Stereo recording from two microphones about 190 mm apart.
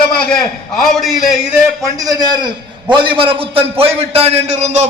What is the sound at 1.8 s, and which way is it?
A man's voice, 20° right (ahead or behind).